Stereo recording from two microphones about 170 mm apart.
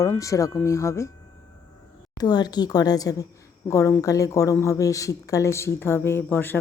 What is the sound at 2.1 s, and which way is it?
Speech, 25° left (ahead or behind).